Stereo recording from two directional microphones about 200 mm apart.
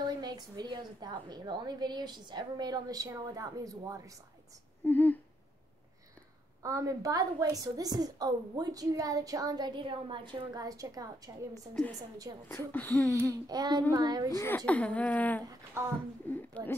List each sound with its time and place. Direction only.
0.0 s a woman's voice: 20° right (ahead or behind)
4.8 s speech: 10° left (ahead or behind)
6.6 s a woman's voice: 15° right (ahead or behind)
12.4 s speech: 10° left (ahead or behind)
13.1 s a woman's voice: 15° right (ahead or behind)
14.3 s speech: 10° left (ahead or behind)
15.8 s a woman's voice: 15° right (ahead or behind)
16.3 s speech: 10° left (ahead or behind)